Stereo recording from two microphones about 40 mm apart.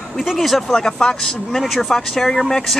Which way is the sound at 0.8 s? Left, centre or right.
Centre.